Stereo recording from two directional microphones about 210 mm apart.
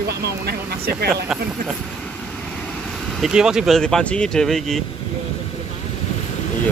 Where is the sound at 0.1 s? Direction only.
50° right (ahead or behind).